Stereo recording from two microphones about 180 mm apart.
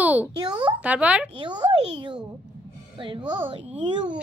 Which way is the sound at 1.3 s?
25° right (ahead or behind).